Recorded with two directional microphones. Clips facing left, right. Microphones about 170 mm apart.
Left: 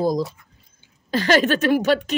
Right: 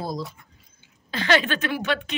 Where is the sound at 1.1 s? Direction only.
45° left (ahead or behind).